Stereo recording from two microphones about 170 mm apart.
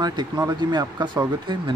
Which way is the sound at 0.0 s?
25° right (ahead or behind).